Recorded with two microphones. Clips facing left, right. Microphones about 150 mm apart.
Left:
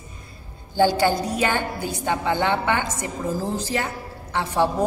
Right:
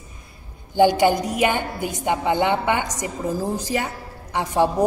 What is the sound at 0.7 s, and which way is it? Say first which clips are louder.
A woman's voice: right 3 dB; 15° right (ahead or behind).